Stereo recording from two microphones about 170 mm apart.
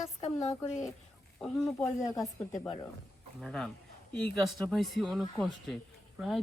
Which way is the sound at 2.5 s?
25° left (ahead or behind).